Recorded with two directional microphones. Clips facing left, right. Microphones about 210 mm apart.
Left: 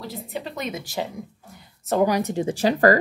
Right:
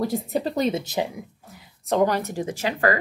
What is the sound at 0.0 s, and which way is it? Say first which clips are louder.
Speech: right 8 dB; 45° right (ahead or behind).